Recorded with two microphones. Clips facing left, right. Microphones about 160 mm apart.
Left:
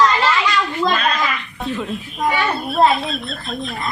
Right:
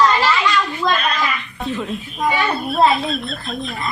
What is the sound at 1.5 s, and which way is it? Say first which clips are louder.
Speech: even; centre (ahead or behind).